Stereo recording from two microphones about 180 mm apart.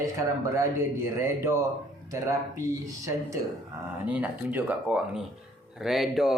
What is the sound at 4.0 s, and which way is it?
Speech, 10° right (ahead or behind).